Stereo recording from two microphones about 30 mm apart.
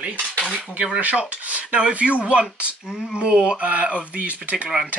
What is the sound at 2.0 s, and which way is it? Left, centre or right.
Speech, right.